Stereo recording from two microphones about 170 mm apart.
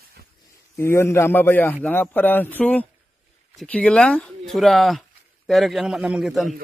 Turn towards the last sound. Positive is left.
turn(degrees=0)  # may be behind; listen again after turning